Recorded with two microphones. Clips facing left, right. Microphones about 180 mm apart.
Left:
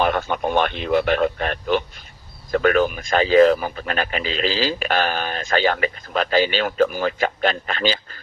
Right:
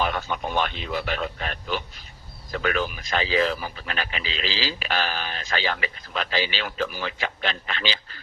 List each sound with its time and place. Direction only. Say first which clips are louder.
0.0 s speech: left 6 dB; 50° left (ahead or behind)